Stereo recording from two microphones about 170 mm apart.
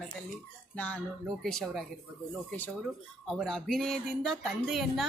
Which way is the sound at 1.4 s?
5° left (ahead or behind).